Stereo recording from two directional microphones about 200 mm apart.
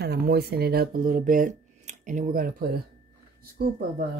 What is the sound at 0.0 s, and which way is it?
Speech, 55° right (ahead or behind).